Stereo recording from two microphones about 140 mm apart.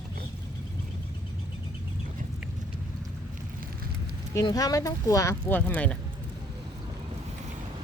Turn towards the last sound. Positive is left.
turn(degrees=10)  # may be behind; listen again after turning